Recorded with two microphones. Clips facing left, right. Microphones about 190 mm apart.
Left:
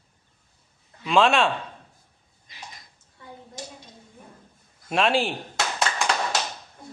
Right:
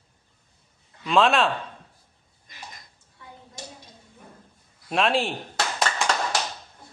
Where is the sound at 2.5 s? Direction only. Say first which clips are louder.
Even; 50° right (ahead or behind).